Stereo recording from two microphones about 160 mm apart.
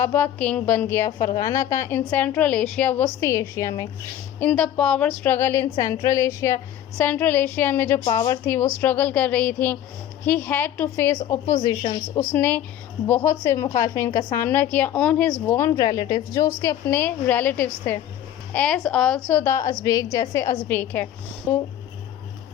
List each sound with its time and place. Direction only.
0.0 s a woman's voice: 10° left (ahead or behind)
4.4 s a woman's voice: 5° left (ahead or behind); by 11.7 s 20° left (ahead or behind)
12.3 s a woman's voice: 10° left (ahead or behind)